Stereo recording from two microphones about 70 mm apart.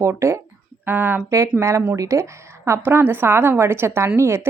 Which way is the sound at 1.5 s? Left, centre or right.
Right.